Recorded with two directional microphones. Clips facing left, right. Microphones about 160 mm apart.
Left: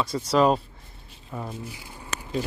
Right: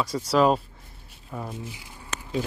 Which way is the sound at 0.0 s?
10° right (ahead or behind).